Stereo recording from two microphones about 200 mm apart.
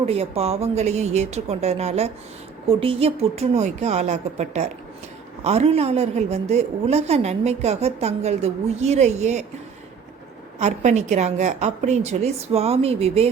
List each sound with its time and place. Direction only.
0.0 s a woman's voice: 30° right (ahead or behind)
10.6 s a woman's voice: 35° right (ahead or behind)